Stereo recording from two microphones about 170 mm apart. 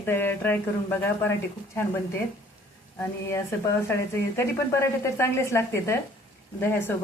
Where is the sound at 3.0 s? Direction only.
15° left (ahead or behind).